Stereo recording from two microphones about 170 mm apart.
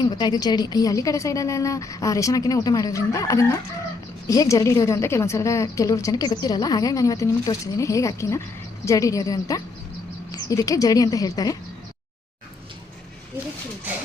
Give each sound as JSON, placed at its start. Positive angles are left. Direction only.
{"t": 0.0, "sound": "a woman's voice", "side_deg": 25}